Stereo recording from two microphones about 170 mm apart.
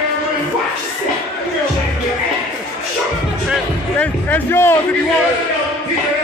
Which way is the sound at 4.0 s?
10° left (ahead or behind).